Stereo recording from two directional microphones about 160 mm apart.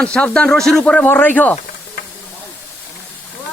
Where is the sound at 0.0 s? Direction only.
5° left (ahead or behind).